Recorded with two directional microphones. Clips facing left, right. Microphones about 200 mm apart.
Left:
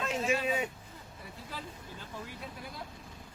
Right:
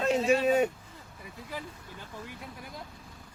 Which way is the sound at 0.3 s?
45° right (ahead or behind).